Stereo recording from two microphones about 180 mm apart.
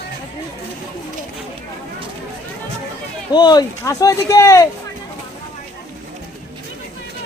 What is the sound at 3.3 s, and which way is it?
Speech, 20° left (ahead or behind).